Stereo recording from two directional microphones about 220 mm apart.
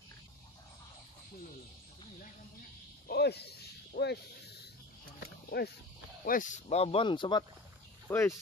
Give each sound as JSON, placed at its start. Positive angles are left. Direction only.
{"t": 3.1, "sound": "snake", "side_deg": 45}
{"t": 5.5, "sound": "speech", "side_deg": 45}